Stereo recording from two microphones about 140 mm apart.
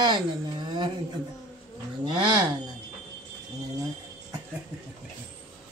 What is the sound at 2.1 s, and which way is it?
Speech, 30° right (ahead or behind).